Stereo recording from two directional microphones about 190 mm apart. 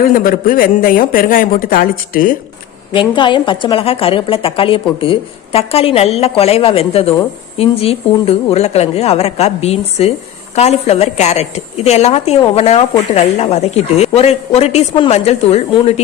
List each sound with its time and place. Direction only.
0.1 s speech: 45° left (ahead or behind)
2.9 s a woman's voice: 25° left (ahead or behind)